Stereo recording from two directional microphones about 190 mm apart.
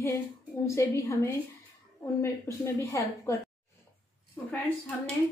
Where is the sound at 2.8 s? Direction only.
15° left (ahead or behind).